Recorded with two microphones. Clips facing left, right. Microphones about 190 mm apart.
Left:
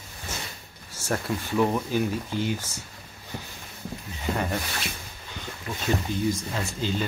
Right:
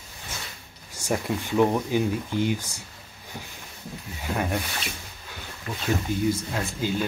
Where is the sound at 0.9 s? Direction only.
15° right (ahead or behind).